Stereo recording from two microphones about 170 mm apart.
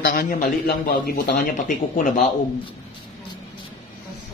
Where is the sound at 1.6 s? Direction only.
50° left (ahead or behind).